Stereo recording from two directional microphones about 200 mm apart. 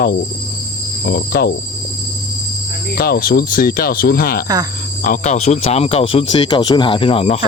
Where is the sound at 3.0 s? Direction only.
50° left (ahead or behind); by 7.4 s 30° left (ahead or behind).